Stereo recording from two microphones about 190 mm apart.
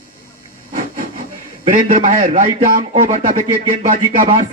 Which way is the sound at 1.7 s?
40° right (ahead or behind).